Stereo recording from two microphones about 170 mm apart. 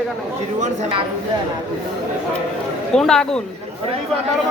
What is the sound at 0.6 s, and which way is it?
Speech, 45° right (ahead or behind).